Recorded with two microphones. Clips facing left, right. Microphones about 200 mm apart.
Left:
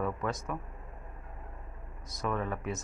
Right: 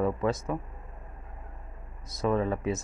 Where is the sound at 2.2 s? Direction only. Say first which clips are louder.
Right 7 dB; 30° right (ahead or behind).